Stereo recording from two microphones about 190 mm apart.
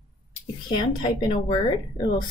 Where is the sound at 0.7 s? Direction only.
25° left (ahead or behind).